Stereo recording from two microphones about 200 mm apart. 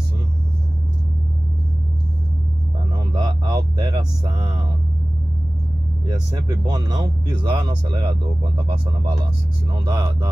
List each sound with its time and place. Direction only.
3.1 s a sound: 20° right (ahead or behind)
6.0 s speech: 20° right (ahead or behind)
9.8 s speech: 20° right (ahead or behind)